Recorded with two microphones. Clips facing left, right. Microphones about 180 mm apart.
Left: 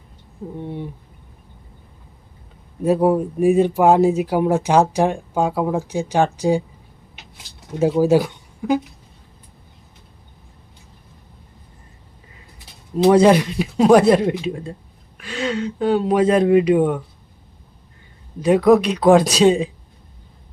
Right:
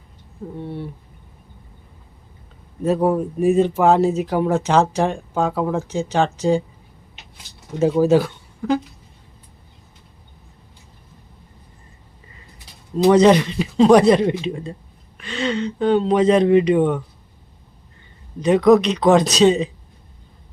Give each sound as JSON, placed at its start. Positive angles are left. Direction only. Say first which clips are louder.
{"t": 0.6, "sound": "speech", "louder": "even", "side_deg": 15}
{"t": 2.8, "sound": "speech", "louder": "left 2 dB", "side_deg": 10}
{"t": 7.8, "sound": "speech", "louder": "even", "side_deg": 10}
{"t": 13.1, "sound": "speech", "louder": "even", "side_deg": 5}
{"t": 18.3, "sound": "speech", "louder": "even", "side_deg": 5}